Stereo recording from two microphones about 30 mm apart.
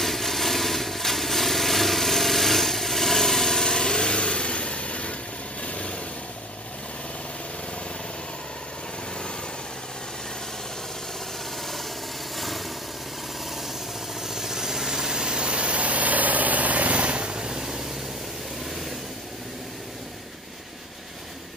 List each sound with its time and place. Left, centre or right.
0.0 s vehicle: centre; by 5.9 s left
12.4 s vehicle: centre
14.2 s vehicle: centre; by 17.5 s right
17.5 s vehicle: right